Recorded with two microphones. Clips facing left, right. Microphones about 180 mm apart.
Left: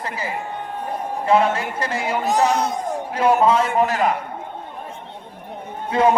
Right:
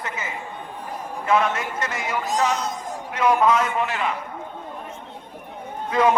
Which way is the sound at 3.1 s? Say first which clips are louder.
Left 2 dB; 30° left (ahead or behind).